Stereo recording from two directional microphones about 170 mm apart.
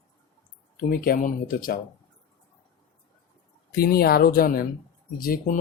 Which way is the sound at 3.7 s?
65° left (ahead or behind).